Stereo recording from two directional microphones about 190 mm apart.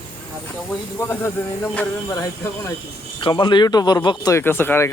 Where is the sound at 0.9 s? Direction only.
15° left (ahead or behind).